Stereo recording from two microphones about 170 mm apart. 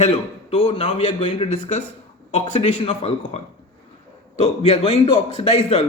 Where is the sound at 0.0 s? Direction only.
35° left (ahead or behind).